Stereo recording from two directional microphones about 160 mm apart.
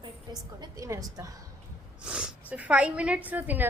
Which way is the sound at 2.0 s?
5° right (ahead or behind).